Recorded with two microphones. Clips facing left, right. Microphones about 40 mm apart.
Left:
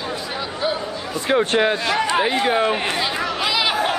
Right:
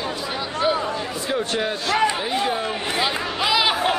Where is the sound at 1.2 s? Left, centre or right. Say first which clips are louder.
Left 7 dB; left.